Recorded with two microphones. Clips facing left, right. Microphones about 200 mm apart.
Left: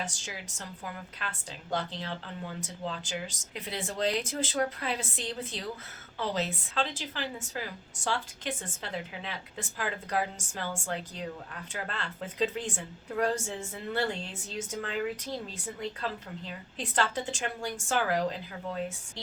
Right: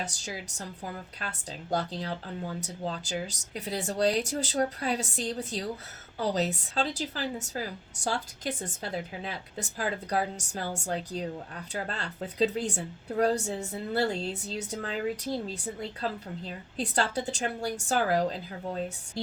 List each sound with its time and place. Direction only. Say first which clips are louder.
0.0 s speech: right 2 dB; 40° right (ahead or behind)
16.5 s speech: right 6 dB; 40° right (ahead or behind)